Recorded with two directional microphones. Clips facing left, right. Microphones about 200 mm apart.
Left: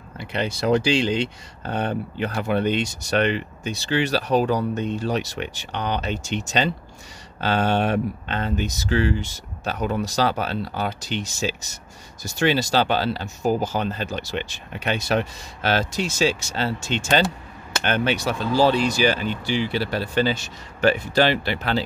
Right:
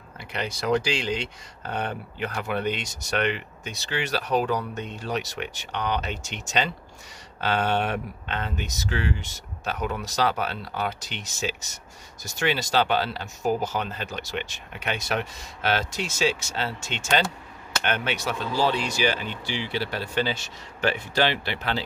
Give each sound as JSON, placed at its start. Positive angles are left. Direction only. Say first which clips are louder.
{"t": 0.2, "sound": "speech", "louder": "left 6 dB", "side_deg": 30}